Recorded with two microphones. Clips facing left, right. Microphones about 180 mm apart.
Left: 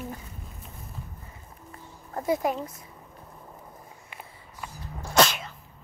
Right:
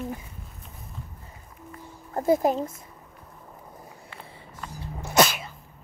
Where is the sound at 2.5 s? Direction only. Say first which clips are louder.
Right 4 dB; 25° right (ahead or behind).